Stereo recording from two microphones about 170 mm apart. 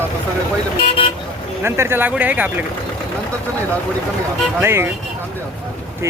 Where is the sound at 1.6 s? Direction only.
15° right (ahead or behind).